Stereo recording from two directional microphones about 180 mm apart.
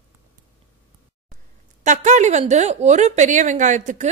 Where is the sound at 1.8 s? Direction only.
40° right (ahead or behind).